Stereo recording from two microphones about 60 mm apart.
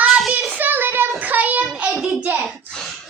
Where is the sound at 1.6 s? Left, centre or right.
Centre.